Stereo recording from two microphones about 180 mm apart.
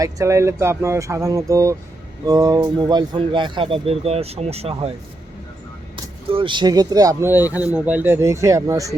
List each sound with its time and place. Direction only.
0.0 s speech: 15° right (ahead or behind); by 4.9 s 35° right (ahead or behind)
6.3 s speech: 25° right (ahead or behind)